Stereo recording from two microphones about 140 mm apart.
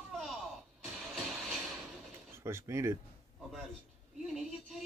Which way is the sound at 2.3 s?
20° right (ahead or behind).